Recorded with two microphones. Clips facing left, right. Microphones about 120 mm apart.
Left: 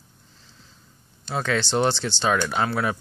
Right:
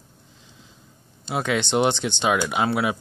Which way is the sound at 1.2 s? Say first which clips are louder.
Right 1 dB; 15° right (ahead or behind).